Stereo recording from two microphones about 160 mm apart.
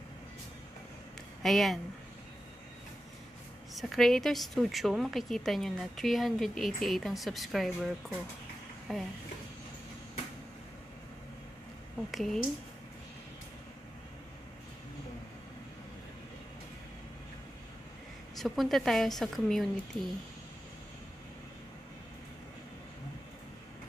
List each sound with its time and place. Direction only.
1.4 s a woman's voice: centre (ahead or behind)
3.7 s a woman's voice: centre (ahead or behind)
12.1 s a woman's voice: centre (ahead or behind)
18.4 s a woman's voice: centre (ahead or behind)